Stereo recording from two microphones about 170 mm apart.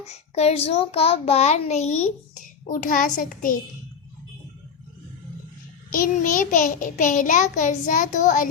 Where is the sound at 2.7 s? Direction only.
55° left (ahead or behind).